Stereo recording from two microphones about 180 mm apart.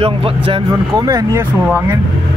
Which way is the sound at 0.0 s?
30° right (ahead or behind).